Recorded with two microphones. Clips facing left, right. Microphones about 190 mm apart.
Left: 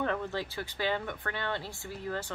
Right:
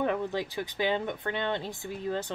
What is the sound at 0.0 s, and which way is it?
Speech, 15° right (ahead or behind).